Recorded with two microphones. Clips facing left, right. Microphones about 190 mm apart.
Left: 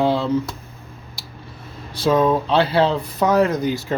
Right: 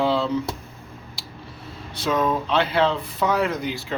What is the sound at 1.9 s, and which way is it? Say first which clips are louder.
Speech: left 6 dB; 30° left (ahead or behind).